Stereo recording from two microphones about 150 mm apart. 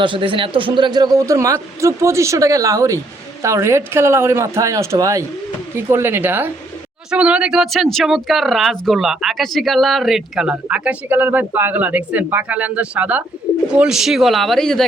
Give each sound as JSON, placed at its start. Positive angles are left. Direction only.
{"t": 0.0, "sound": "a man's voice", "side_deg": -35}